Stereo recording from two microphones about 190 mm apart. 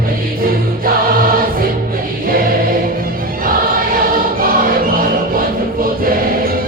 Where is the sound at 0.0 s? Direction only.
50° right (ahead or behind).